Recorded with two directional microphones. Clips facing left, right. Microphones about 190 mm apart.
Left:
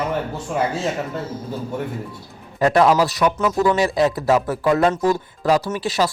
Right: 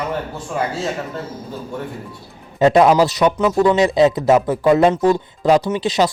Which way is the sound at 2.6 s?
20° right (ahead or behind).